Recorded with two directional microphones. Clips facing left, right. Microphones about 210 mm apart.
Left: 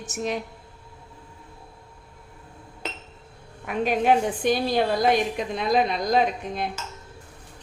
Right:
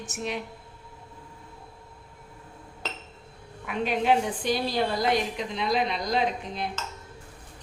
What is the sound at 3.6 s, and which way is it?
A woman's voice, 45° left (ahead or behind).